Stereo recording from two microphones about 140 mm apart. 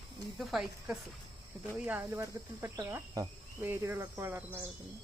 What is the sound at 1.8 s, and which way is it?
Insect, 15° right (ahead or behind).